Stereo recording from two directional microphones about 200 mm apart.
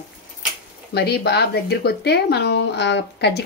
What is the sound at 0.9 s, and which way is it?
Speech, 55° left (ahead or behind).